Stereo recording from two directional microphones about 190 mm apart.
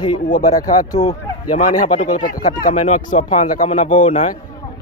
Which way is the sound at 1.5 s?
40° left (ahead or behind).